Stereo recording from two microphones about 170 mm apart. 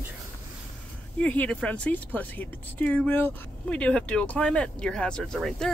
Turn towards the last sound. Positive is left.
turn(degrees=0)  # may be behind; listen again after turning